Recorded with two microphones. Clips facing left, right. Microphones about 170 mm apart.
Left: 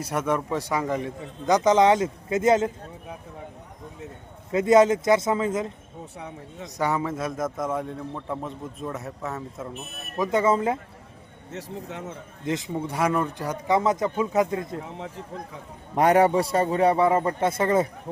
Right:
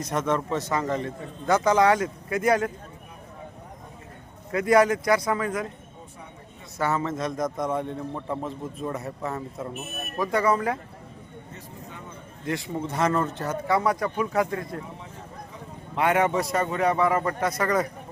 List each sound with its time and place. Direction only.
0.0 s a man's voice: 10° left (ahead or behind)
4.5 s speech: 20° left (ahead or behind)
6.1 s a sound: 80° left
6.7 s a man's voice: 15° left (ahead or behind)
10.2 s speech: 20° left (ahead or behind)
11.5 s speech: 90° left
12.5 s speech: 20° left (ahead or behind)
16.0 s a man's voice: 40° left (ahead or behind)